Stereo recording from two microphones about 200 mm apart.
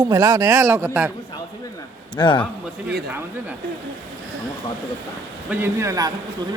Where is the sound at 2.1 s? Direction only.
25° left (ahead or behind).